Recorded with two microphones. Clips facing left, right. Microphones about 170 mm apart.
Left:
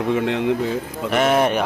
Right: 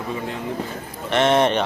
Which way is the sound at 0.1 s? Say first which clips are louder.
Left 9 dB; 80° left.